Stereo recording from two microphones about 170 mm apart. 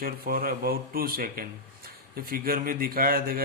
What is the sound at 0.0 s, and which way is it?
A man's voice, 60° right (ahead or behind).